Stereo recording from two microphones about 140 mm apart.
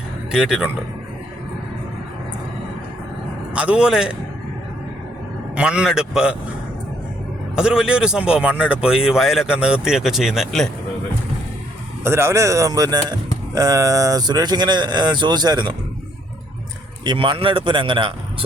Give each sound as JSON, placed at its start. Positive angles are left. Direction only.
{"t": 0.3, "sound": "speech", "side_deg": -5}
{"t": 3.5, "sound": "a man's voice", "side_deg": -10}
{"t": 5.5, "sound": "speech", "side_deg": -5}
{"t": 7.5, "sound": "speech", "side_deg": -5}
{"t": 12.0, "sound": "speech", "side_deg": -20}
{"t": 17.0, "sound": "a man's voice", "side_deg": -35}